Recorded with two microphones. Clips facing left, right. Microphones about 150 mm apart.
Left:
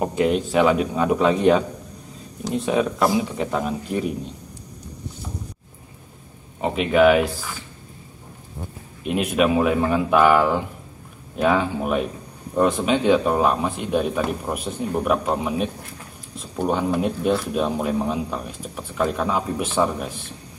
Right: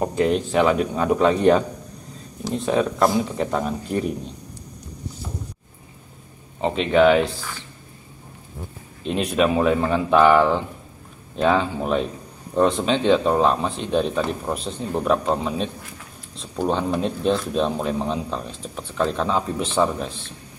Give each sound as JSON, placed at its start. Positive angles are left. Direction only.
{"t": 0.2, "sound": "speech", "side_deg": 5}
{"t": 6.6, "sound": "speech", "side_deg": 10}
{"t": 9.0, "sound": "speech", "side_deg": 10}